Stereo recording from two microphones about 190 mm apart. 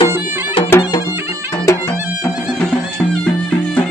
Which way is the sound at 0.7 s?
20° left (ahead or behind).